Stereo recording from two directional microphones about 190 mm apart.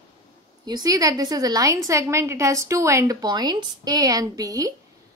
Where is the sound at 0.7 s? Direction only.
20° right (ahead or behind).